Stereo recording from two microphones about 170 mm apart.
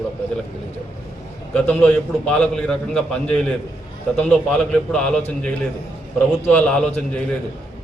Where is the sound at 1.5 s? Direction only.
5° left (ahead or behind).